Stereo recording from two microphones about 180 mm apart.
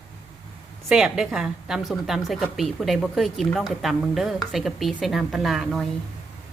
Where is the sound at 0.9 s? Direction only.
5° right (ahead or behind).